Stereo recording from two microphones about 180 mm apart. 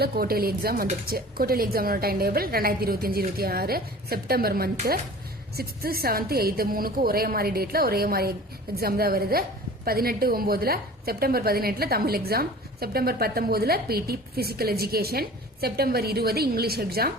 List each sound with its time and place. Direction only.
0.0 s a woman's voice: 55° right (ahead or behind)